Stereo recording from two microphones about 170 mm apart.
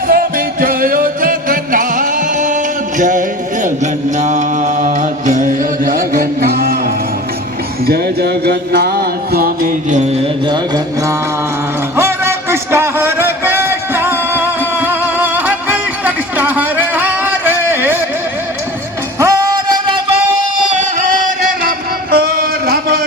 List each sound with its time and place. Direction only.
0.1 s music: 55° right (ahead or behind)
4.2 s mantra: 45° right (ahead or behind)
7.9 s music: 65° right (ahead or behind); by 10.2 s 45° right (ahead or behind)
11.9 s a sound: 15° right (ahead or behind)
19.2 s music: 20° right (ahead or behind)
22.1 s a sound: 65° right (ahead or behind)